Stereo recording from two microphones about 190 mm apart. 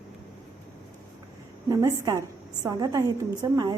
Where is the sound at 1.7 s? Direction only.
15° right (ahead or behind).